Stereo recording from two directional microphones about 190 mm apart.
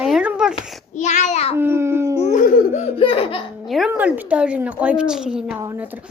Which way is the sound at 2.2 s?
40° left (ahead or behind).